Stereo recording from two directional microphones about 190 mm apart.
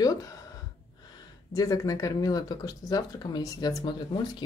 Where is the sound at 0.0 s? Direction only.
20° left (ahead or behind).